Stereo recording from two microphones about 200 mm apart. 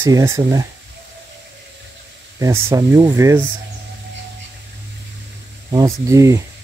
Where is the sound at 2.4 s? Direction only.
15° right (ahead or behind).